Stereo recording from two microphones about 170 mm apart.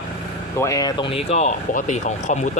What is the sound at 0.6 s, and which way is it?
Speech, 20° left (ahead or behind).